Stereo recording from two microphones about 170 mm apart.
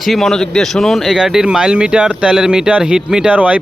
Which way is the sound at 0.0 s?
Centre (ahead or behind).